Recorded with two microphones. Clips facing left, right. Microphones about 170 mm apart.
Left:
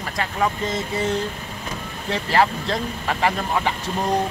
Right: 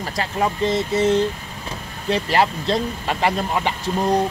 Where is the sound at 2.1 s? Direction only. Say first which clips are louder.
Right 1 dB; 25° right (ahead or behind).